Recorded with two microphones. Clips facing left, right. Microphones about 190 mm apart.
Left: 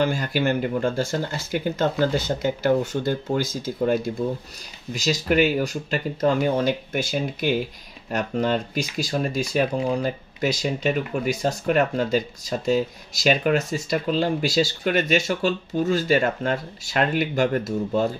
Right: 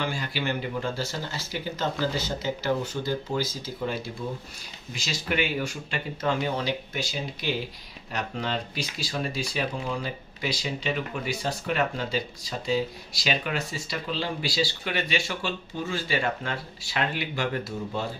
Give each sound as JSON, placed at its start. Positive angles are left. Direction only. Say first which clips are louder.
{"t": 0.0, "sound": "speech", "louder": "left 8 dB", "side_deg": 45}